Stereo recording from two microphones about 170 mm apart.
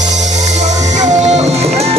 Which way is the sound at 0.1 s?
45° right (ahead or behind).